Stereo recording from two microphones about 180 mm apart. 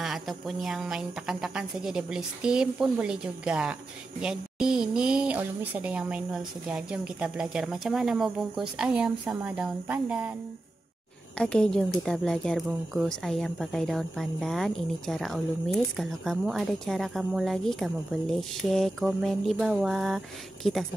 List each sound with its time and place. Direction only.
0.0 s speech: centre (ahead or behind)
11.3 s speech: 5° left (ahead or behind)